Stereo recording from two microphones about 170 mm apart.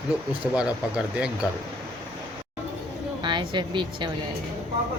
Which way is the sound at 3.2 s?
25° right (ahead or behind).